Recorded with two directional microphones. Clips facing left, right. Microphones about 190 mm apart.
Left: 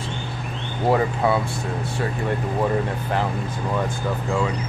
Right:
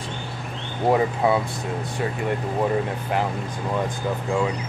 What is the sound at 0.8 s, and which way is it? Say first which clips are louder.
Speech: even; 20° right (ahead or behind).